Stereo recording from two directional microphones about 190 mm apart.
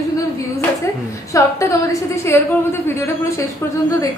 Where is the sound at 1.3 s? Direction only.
15° left (ahead or behind).